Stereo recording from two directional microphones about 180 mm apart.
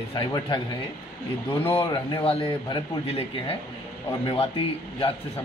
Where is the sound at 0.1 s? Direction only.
25° left (ahead or behind).